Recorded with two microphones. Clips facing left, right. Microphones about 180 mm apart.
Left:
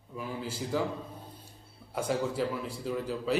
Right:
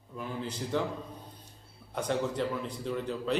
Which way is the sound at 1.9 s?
5° left (ahead or behind).